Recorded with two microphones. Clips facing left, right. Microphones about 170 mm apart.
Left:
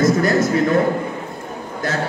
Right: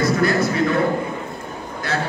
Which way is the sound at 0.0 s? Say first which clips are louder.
Left 3 dB; 45° left (ahead or behind).